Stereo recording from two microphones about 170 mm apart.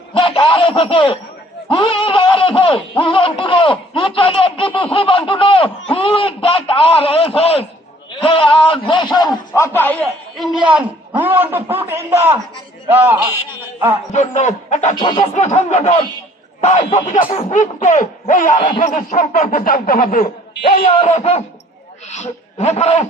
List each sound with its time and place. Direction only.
0.1 s snicker: 30° left (ahead or behind)
1.7 s a man's voice: 30° left (ahead or behind)
9.5 s a man's voice: 10° left (ahead or behind); by 13.1 s 10° right (ahead or behind)
14.1 s speech: 45° left (ahead or behind)
14.9 s speech: 30° left (ahead or behind); by 20.2 s 55° left (ahead or behind)
20.6 s speech: 35° left (ahead or behind)